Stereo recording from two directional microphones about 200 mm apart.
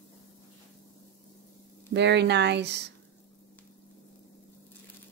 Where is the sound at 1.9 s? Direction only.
60° right (ahead or behind).